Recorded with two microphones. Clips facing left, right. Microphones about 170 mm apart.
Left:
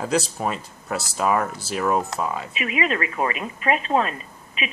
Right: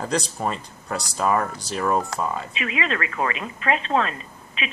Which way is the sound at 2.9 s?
20° left (ahead or behind).